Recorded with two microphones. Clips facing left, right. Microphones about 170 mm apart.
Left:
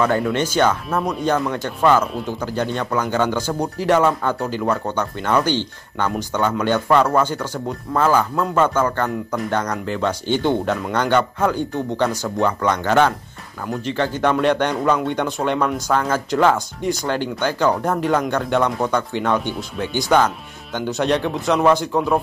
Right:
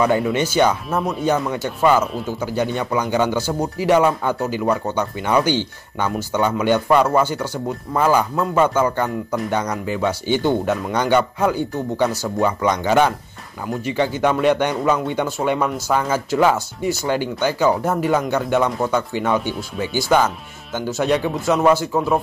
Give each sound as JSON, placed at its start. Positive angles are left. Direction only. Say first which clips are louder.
{"t": 0.2, "sound": "speech", "louder": "right 1 dB", "side_deg": -10}